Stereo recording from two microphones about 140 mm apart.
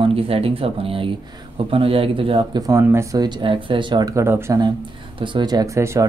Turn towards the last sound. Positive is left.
turn(degrees=-20)  # may be behind; listen again after turning